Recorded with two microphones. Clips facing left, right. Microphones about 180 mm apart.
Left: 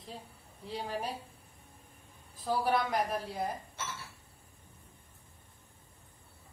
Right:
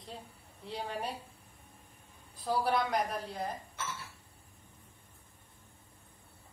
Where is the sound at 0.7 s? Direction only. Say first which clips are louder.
Left 1 dB; centre (ahead or behind).